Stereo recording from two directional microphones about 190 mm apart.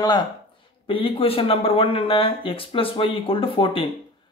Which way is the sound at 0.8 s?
25° left (ahead or behind).